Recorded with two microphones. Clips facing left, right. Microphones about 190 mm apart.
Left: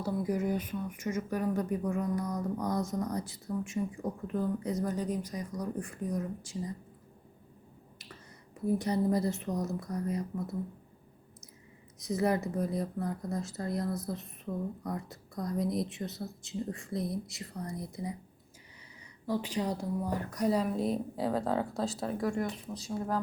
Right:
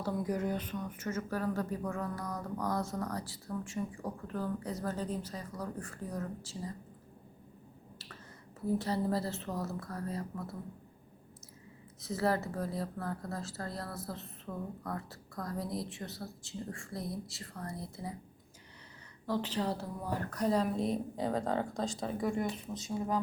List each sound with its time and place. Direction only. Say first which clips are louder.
0.0 s speech: left 2 dB; 10° left (ahead or behind)
8.6 s speech: left 3 dB; 15° left (ahead or behind)
11.9 s a woman's voice: left 3 dB; 15° left (ahead or behind)
19.2 s speech: left 1 dB; 10° left (ahead or behind)